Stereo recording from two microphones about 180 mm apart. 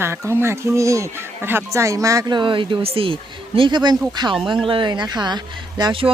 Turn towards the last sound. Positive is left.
turn(degrees=-30)  # may be behind; listen again after turning